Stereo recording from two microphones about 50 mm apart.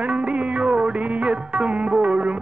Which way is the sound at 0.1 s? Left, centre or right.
Right.